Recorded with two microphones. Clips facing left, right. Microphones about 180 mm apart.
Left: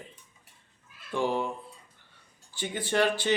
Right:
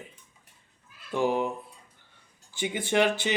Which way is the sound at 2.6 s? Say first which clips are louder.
Right 2 dB; 15° right (ahead or behind).